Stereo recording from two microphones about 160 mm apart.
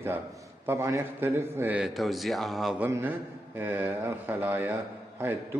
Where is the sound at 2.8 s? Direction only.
10° right (ahead or behind).